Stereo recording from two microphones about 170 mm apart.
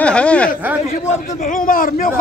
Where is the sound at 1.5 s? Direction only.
55° left (ahead or behind).